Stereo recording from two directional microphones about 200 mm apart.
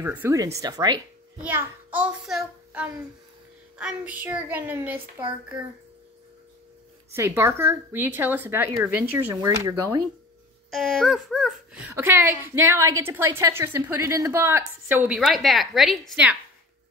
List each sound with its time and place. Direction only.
0.0 s speech: 10° right (ahead or behind)
1.4 s a child's voice: 10° right (ahead or behind)
7.2 s speech: 15° right (ahead or behind)
10.7 s a woman's voice: centre (ahead or behind)